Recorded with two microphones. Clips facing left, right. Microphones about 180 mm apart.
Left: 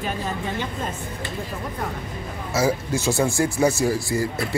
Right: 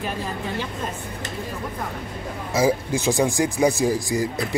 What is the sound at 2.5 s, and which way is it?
Speech, 15° right (ahead or behind).